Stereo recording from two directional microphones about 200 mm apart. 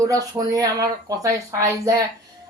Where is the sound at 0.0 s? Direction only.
15° right (ahead or behind).